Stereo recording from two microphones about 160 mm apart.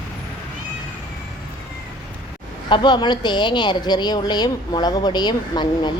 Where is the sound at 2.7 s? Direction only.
30° left (ahead or behind).